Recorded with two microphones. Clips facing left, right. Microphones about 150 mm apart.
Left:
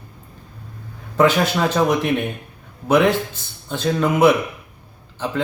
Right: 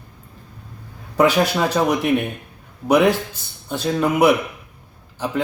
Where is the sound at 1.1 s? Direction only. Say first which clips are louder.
Even; 10° right (ahead or behind).